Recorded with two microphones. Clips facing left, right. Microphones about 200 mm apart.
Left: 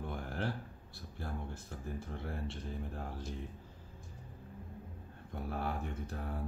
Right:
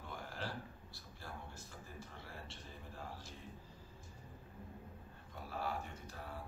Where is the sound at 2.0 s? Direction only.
55° left (ahead or behind).